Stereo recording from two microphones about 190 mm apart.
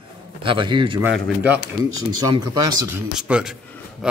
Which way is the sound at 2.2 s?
20° right (ahead or behind).